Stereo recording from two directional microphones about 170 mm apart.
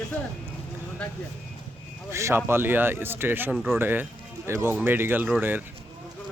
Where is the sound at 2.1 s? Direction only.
15° right (ahead or behind).